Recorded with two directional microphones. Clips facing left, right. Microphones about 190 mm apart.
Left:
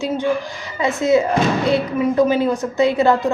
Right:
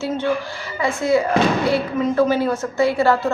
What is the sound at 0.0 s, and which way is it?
Speech, 15° left (ahead or behind).